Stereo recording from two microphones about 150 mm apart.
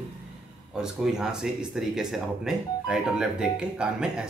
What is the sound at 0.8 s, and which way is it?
Speech, 5° right (ahead or behind).